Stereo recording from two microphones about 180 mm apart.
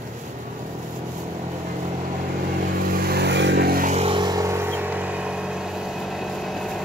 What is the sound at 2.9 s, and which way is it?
Vehicle, 60° right (ahead or behind).